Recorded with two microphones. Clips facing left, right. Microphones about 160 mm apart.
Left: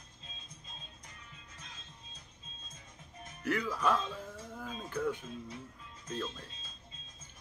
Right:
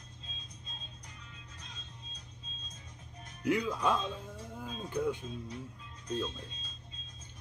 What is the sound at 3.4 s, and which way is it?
Speech, 15° right (ahead or behind).